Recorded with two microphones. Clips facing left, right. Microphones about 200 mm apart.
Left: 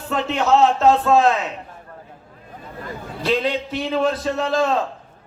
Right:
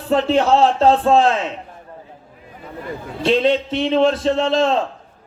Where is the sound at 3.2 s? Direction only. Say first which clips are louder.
Right 5 dB; 25° right (ahead or behind).